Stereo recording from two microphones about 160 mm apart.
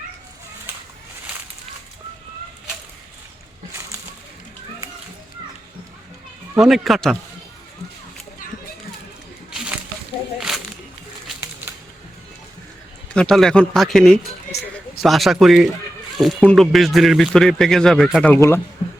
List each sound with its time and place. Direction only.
6.6 s speech: centre (ahead or behind)
9.5 s a sound: 5° right (ahead or behind)
13.1 s speech: 5° left (ahead or behind)
18.3 s speech: 20° left (ahead or behind)